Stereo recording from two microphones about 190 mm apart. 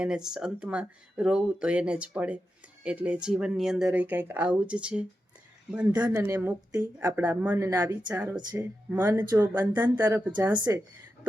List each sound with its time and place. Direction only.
0.0 s speech: 5° right (ahead or behind)
10.5 s speech: 25° right (ahead or behind)